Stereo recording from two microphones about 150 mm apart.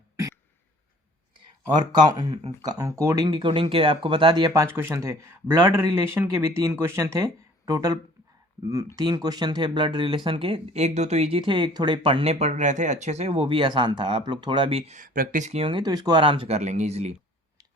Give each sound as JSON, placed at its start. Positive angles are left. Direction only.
{"t": 1.9, "sound": "speech", "side_deg": -30}
{"t": 9.0, "sound": "speech", "side_deg": -25}